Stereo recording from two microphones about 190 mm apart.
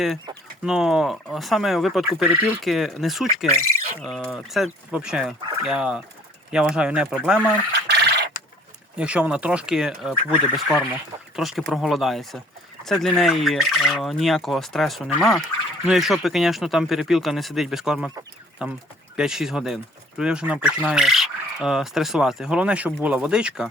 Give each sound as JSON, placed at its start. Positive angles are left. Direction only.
{"t": 0.6, "sound": "speech", "side_deg": -5}
{"t": 7.7, "sound": "a sound", "side_deg": -60}
{"t": 9.0, "sound": "speech", "side_deg": -5}